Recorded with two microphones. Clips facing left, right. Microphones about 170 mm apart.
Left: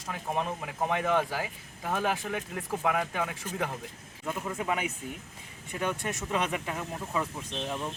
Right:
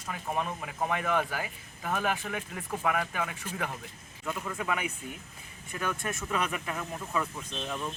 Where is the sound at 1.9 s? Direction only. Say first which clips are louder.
Left 1 dB; 15° left (ahead or behind).